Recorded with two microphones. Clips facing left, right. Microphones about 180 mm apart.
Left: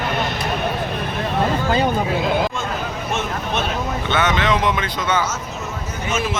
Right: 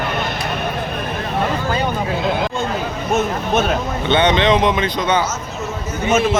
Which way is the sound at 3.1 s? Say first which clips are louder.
Right 7 dB; 45° right (ahead or behind).